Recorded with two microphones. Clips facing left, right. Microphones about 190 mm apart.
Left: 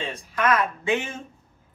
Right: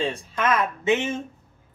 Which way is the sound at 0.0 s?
25° right (ahead or behind).